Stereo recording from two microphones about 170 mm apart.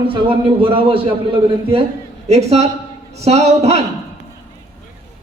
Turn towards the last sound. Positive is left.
turn(degrees=-40)  # may be behind; listen again after turning